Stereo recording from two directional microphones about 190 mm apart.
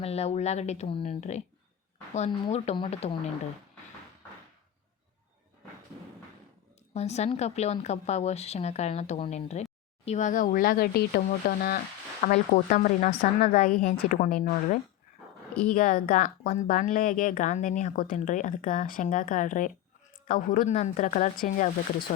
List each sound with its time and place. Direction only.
0.0 s a woman's voice: 35° left (ahead or behind)
6.9 s a woman's voice: 35° left (ahead or behind)